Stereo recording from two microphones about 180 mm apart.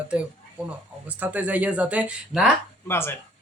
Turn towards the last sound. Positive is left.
turn(degrees=15)  # may be behind; listen again after turning